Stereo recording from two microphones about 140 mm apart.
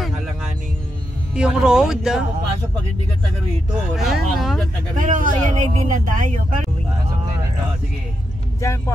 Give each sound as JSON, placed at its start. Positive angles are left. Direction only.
{"t": 1.3, "sound": "speech", "side_deg": -5}
{"t": 3.9, "sound": "speech", "side_deg": 0}
{"t": 4.9, "sound": "speech", "side_deg": -70}
{"t": 8.5, "sound": "speech", "side_deg": 20}